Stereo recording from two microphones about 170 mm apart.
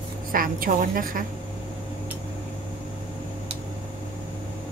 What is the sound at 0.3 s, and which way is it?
Speech, 55° right (ahead or behind).